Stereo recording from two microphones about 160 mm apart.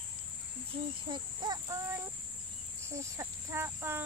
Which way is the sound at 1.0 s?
30° right (ahead or behind).